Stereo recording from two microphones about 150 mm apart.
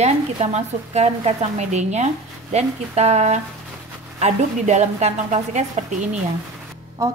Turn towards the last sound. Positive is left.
turn(degrees=-25)  # may be behind; listen again after turning